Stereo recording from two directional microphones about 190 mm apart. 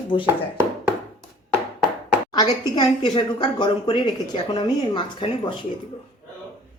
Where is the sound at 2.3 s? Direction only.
20° left (ahead or behind).